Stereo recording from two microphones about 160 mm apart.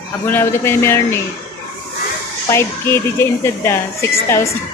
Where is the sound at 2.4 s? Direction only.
15° left (ahead or behind).